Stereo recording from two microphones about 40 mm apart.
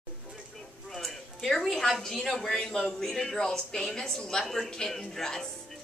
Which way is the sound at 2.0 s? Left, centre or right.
Centre.